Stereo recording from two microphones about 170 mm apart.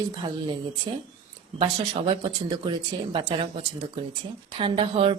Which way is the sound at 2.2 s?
30° right (ahead or behind).